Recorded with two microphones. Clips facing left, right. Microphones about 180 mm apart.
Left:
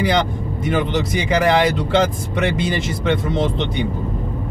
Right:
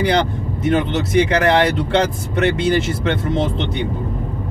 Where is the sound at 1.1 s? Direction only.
Centre (ahead or behind).